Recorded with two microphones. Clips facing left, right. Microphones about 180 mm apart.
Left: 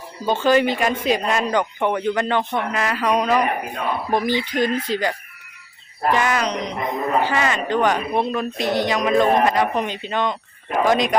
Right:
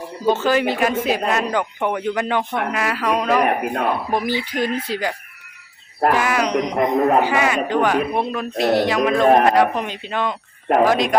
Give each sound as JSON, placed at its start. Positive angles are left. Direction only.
{"t": 0.3, "sound": "speech", "side_deg": -5}
{"t": 3.4, "sound": "speech", "side_deg": -60}
{"t": 4.1, "sound": "speech", "side_deg": -10}
{"t": 6.1, "sound": "speech", "side_deg": -5}
{"t": 9.3, "sound": "speech", "side_deg": -55}
{"t": 9.6, "sound": "speech", "side_deg": 0}